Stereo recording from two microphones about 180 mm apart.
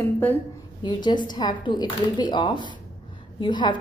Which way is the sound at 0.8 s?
25° left (ahead or behind).